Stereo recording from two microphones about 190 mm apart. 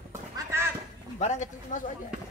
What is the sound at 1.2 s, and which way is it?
Speech, 40° left (ahead or behind).